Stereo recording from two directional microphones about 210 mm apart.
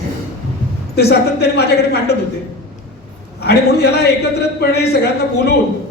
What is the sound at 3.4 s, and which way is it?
Speech, 50° left (ahead or behind).